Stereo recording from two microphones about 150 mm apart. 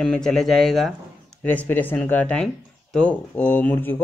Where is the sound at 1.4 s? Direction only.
10° left (ahead or behind).